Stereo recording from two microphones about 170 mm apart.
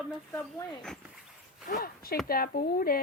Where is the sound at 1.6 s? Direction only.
60° left (ahead or behind).